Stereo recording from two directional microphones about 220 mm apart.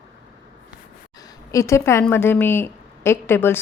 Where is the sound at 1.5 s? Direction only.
15° left (ahead or behind).